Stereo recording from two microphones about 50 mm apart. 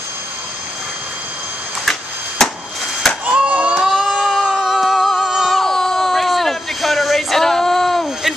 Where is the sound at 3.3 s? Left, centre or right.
Right.